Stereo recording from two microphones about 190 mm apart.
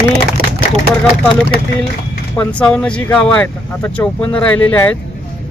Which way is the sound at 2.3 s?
5° left (ahead or behind).